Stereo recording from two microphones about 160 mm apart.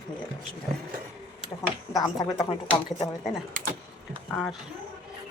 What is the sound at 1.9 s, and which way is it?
Speech, 25° left (ahead or behind).